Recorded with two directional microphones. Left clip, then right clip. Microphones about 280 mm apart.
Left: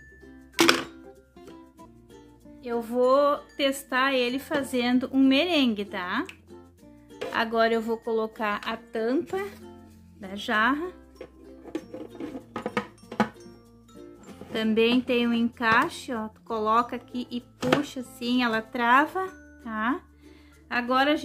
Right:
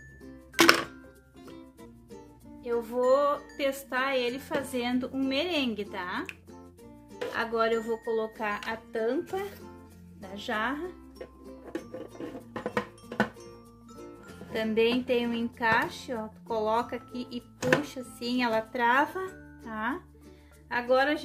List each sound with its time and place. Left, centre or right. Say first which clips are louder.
2.6 s speech: left 3 dB; left
7.3 s speech: left 4 dB; left
12.6 s music: left 1 dB; centre
14.5 s speech: left 3 dB; centre